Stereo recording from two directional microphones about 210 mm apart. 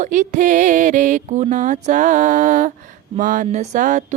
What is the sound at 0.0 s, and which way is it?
Mantra, 35° right (ahead or behind).